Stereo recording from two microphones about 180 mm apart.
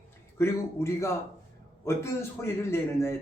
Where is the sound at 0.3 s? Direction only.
15° left (ahead or behind).